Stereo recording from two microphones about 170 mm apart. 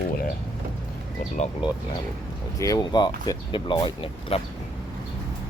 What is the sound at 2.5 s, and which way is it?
Speech, 20° left (ahead or behind).